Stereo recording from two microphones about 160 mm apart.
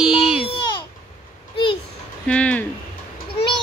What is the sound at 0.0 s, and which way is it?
Baby cry, 5° right (ahead or behind).